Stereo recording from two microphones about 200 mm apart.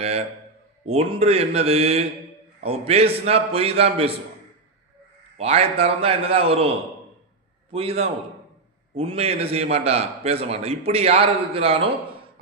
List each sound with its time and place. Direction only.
0.9 s a man's voice: 30° right (ahead or behind)
5.4 s a man's voice: 30° right (ahead or behind)
7.7 s a man's voice: 30° right (ahead or behind)